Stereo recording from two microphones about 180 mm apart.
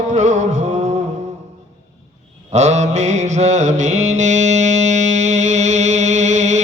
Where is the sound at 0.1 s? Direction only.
40° right (ahead or behind).